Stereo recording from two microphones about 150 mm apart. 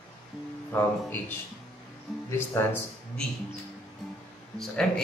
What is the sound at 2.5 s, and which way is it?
Speech, 15° left (ahead or behind).